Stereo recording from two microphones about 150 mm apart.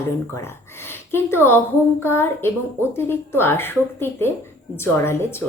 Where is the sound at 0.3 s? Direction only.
15° left (ahead or behind).